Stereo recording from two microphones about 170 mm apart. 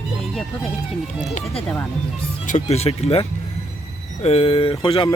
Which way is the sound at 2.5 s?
40° left (ahead or behind).